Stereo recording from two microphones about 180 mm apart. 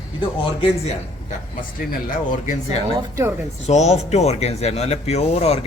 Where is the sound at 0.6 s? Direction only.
35° left (ahead or behind).